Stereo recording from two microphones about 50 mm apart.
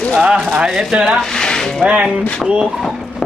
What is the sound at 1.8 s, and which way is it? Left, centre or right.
Speech, right.